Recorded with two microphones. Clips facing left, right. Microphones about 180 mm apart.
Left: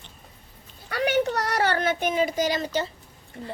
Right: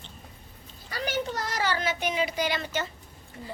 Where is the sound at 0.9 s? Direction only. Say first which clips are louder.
Left 7 dB; 65° left (ahead or behind); by 2.9 s 35° left (ahead or behind).